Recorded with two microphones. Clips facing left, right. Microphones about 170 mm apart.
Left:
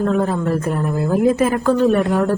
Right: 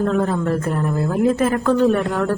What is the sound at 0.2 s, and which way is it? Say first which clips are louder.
A woman's voice: left 1 dB; 5° left (ahead or behind).